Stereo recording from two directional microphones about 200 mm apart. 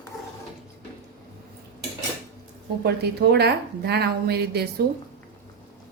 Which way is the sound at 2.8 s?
55° right (ahead or behind).